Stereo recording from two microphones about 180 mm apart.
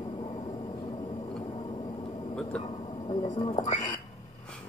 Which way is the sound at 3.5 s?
30° left (ahead or behind).